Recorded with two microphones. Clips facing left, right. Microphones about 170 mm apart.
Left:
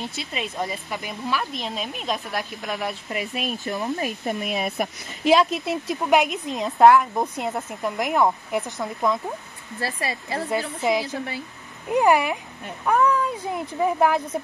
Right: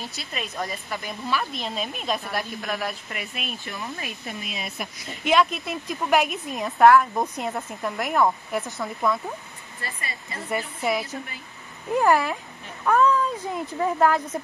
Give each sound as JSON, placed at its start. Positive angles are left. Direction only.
{"t": 0.0, "sound": "speech", "side_deg": 20}
{"t": 1.6, "sound": "speech", "side_deg": -5}
{"t": 2.3, "sound": "speech", "side_deg": 20}
{"t": 5.2, "sound": "speech", "side_deg": 30}
{"t": 6.0, "sound": "speech", "side_deg": 20}
{"t": 9.8, "sound": "speech", "side_deg": 90}
{"t": 11.9, "sound": "speech", "side_deg": 15}